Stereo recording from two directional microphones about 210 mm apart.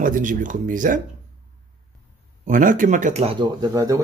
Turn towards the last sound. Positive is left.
turn(degrees=-15)  # may be behind; listen again after turning